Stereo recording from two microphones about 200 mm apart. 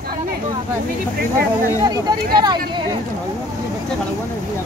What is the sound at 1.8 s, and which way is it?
Speech, 20° right (ahead or behind).